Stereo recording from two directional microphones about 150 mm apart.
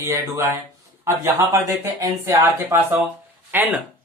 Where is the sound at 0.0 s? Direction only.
20° right (ahead or behind).